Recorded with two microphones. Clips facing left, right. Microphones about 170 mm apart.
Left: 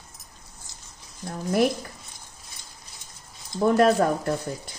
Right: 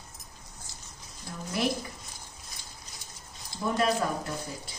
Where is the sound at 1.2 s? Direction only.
55° left (ahead or behind).